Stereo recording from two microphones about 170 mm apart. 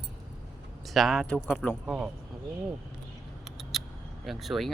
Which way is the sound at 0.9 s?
Centre (ahead or behind).